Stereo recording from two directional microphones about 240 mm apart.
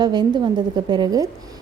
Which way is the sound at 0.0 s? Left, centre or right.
Centre.